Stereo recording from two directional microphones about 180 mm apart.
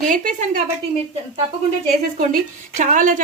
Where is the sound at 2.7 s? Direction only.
45° right (ahead or behind).